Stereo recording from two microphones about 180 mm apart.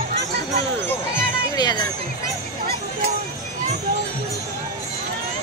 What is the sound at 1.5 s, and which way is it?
Speech, 25° left (ahead or behind).